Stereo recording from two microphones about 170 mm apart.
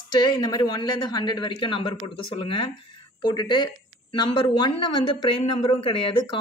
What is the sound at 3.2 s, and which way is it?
Speech, 25° left (ahead or behind).